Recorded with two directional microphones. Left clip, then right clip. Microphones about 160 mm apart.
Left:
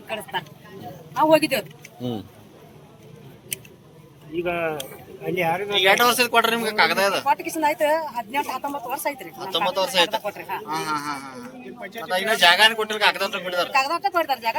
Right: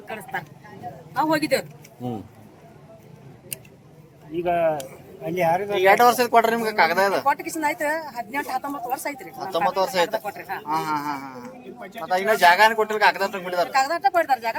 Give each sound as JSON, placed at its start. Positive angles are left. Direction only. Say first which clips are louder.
{"t": 0.1, "sound": "a man's voice", "louder": "left 2 dB", "side_deg": -5}
{"t": 4.4, "sound": "speech", "louder": "right 4 dB", "side_deg": -85}
{"t": 5.7, "sound": "speech", "louder": "right 1 dB", "side_deg": -25}
{"t": 7.6, "sound": "speech", "louder": "left 4 dB", "side_deg": -10}
{"t": 9.4, "sound": "speech", "louder": "right 1 dB", "side_deg": -30}
{"t": 10.1, "sound": "speech", "louder": "left 1 dB", "side_deg": 0}
{"t": 10.7, "sound": "speech", "louder": "right 3 dB", "side_deg": -30}
{"t": 13.8, "sound": "speech", "louder": "right 2 dB", "side_deg": -10}